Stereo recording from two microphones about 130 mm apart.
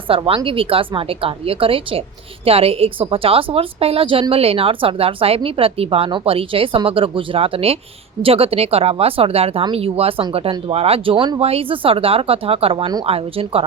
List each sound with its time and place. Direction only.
0.1 s a woman's voice: 45° right (ahead or behind)